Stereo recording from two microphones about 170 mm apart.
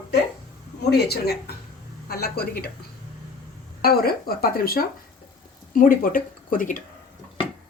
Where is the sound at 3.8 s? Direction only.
60° left (ahead or behind).